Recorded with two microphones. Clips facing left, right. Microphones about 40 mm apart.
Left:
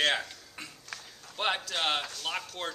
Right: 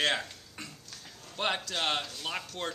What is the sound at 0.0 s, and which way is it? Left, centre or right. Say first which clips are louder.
A man's voice: left 1 dB; centre.